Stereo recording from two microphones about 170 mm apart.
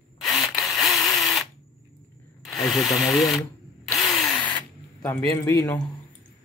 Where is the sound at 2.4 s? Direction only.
Centre (ahead or behind).